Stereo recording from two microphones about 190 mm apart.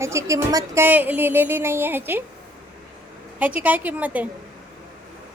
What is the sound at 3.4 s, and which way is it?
Speech, 10° right (ahead or behind).